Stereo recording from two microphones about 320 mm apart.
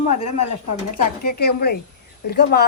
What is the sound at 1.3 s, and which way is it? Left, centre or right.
Speech, left.